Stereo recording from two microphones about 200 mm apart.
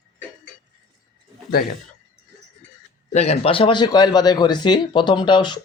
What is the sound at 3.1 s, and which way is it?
Speech, 30° left (ahead or behind).